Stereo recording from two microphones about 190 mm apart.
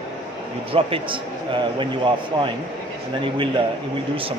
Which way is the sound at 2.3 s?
25° right (ahead or behind).